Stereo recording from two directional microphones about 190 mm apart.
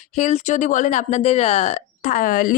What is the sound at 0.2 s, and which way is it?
Speech, 40° left (ahead or behind).